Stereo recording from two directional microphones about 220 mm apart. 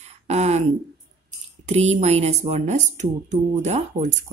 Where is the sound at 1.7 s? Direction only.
30° right (ahead or behind).